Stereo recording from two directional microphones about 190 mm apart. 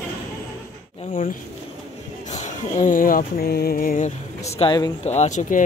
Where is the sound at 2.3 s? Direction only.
40° left (ahead or behind).